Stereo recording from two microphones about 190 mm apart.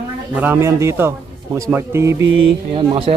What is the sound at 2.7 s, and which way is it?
Speech, 25° right (ahead or behind).